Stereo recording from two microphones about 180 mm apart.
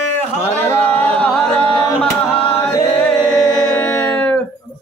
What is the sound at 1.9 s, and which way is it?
Tabla, 30° left (ahead or behind).